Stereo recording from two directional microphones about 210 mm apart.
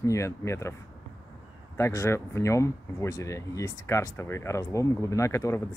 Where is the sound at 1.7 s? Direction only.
15° left (ahead or behind).